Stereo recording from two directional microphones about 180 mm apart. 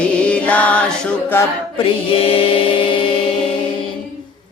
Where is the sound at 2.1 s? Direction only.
30° left (ahead or behind).